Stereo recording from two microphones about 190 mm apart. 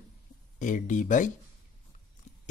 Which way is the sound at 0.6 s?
40° left (ahead or behind).